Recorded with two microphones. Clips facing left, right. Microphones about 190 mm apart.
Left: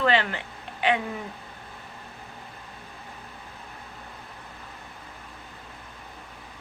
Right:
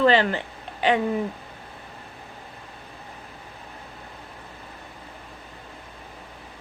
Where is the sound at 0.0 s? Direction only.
35° right (ahead or behind).